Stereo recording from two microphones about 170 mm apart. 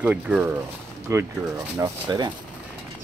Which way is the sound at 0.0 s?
5° right (ahead or behind).